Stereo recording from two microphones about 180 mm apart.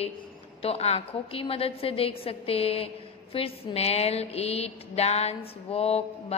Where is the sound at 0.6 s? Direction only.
35° left (ahead or behind).